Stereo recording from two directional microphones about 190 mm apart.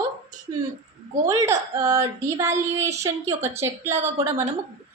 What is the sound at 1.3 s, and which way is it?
A woman's voice, 15° right (ahead or behind).